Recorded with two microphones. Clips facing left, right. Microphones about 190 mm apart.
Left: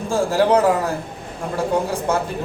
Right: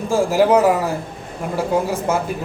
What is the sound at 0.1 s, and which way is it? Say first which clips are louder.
Speech: right 2 dB; 10° right (ahead or behind).